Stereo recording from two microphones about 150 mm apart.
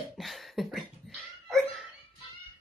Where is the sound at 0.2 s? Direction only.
Centre (ahead or behind).